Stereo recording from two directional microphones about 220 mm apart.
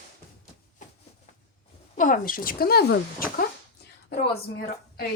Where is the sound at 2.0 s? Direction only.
35° left (ahead or behind).